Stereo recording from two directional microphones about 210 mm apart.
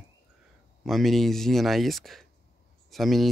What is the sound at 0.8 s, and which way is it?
Speech, centre (ahead or behind).